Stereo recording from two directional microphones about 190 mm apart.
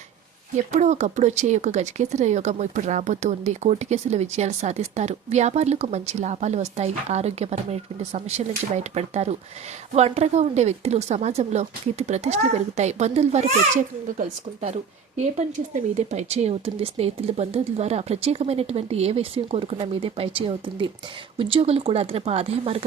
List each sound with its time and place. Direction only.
0.5 s speech: 40° right (ahead or behind)